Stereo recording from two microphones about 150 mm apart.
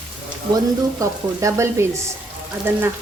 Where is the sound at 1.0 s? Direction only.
20° right (ahead or behind).